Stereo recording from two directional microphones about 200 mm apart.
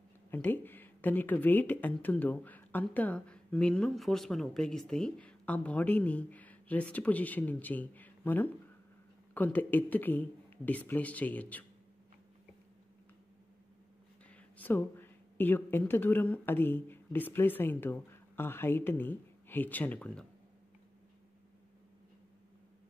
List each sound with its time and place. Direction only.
0.3 s speech: 10° left (ahead or behind)
14.3 s speech: 10° left (ahead or behind)